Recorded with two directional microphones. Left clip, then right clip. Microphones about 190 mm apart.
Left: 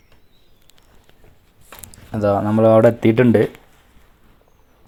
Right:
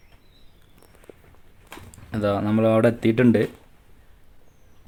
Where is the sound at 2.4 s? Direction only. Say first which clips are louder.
Left 8 dB; 5° right (ahead or behind).